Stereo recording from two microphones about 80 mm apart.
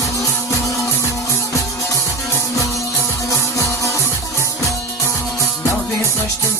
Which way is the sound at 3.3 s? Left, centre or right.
Left.